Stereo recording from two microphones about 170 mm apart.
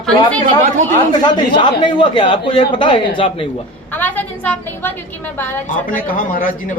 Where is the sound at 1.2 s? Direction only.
25° left (ahead or behind).